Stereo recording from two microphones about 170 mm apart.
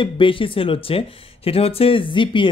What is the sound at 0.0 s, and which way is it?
Speech, 30° left (ahead or behind).